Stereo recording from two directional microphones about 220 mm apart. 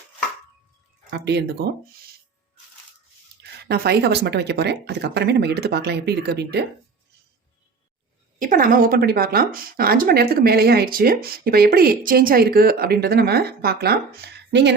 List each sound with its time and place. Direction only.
1.1 s a woman's voice: 50° right (ahead or behind)
3.7 s a woman's voice: 45° right (ahead or behind)
8.4 s a woman's voice: 40° right (ahead or behind)